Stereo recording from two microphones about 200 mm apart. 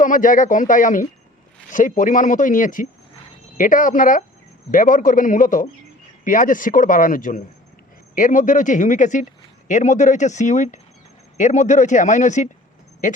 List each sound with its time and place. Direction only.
0.0 s speech: 40° left (ahead or behind)